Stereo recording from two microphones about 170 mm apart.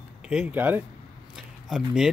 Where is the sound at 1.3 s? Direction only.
5° right (ahead or behind).